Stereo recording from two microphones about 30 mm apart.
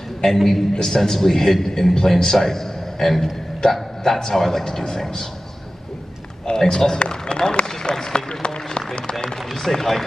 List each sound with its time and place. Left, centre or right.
0.4 s a man's voice: centre
0.7 s a man's voice: centre
6.5 s a man's voice: centre
8.7 s a sound: left
9.5 s a man's voice: centre